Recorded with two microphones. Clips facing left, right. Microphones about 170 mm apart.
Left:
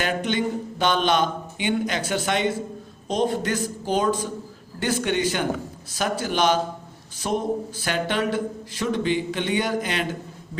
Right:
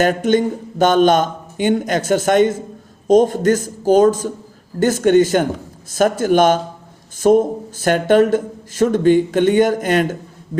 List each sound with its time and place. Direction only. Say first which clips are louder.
0.0 s speech: right 9 dB; 45° right (ahead or behind)